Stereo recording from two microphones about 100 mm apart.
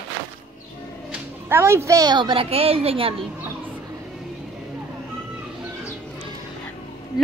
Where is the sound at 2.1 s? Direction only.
55° right (ahead or behind); by 3.1 s 75° right (ahead or behind).